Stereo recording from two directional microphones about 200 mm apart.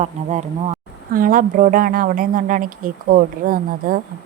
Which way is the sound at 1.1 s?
45° right (ahead or behind).